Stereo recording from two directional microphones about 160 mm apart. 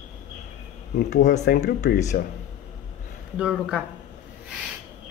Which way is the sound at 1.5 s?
65° left (ahead or behind).